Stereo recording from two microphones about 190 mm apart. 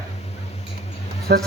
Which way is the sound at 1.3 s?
55° right (ahead or behind).